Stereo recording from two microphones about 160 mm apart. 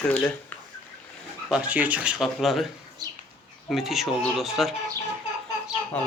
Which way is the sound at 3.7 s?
Centre (ahead or behind).